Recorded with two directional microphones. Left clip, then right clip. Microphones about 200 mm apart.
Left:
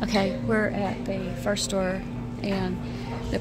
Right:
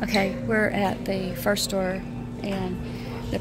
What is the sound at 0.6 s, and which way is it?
A woman's voice, 20° right (ahead or behind).